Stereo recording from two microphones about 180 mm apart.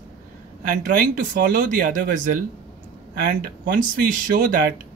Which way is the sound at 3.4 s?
50° right (ahead or behind).